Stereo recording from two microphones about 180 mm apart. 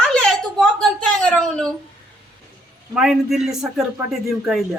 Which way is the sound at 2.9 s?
5° right (ahead or behind).